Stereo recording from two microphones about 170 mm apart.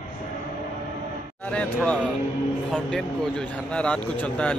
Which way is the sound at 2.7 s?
5° left (ahead or behind).